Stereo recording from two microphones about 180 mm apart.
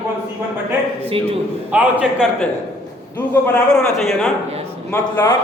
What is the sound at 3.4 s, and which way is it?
Speech, 5° left (ahead or behind).